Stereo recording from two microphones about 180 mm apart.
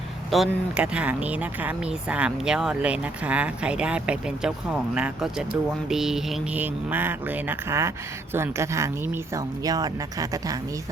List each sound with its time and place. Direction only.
0.3 s speech: centre (ahead or behind); by 10.6 s 20° right (ahead or behind)